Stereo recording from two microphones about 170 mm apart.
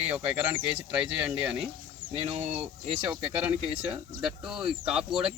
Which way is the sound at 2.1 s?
40° right (ahead or behind).